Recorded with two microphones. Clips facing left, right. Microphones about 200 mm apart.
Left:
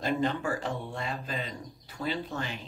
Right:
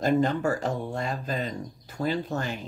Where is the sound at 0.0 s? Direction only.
45° right (ahead or behind).